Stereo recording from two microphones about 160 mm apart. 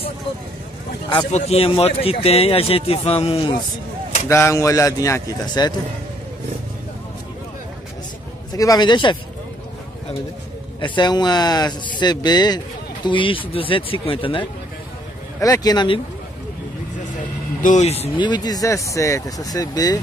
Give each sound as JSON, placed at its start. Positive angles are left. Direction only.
{"t": 1.3, "sound": "speech", "side_deg": 40}
{"t": 4.3, "sound": "speech", "side_deg": 15}
{"t": 8.5, "sound": "speech", "side_deg": 25}
{"t": 10.8, "sound": "speech", "side_deg": 25}
{"t": 15.4, "sound": "speech", "side_deg": 25}
{"t": 17.6, "sound": "speech", "side_deg": 50}